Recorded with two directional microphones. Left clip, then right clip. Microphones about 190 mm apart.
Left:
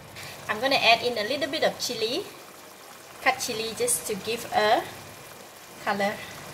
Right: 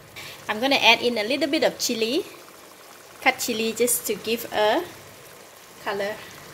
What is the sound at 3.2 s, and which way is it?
Speech, 50° right (ahead or behind).